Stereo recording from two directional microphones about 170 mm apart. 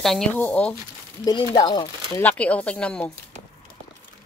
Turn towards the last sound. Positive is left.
turn(degrees=5)  # may be behind; listen again after turning